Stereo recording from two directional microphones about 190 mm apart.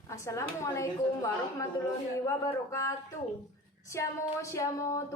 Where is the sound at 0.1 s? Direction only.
15° left (ahead or behind).